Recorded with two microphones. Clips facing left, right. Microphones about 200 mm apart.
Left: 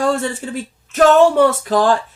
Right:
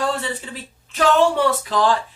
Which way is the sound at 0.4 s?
50° left (ahead or behind).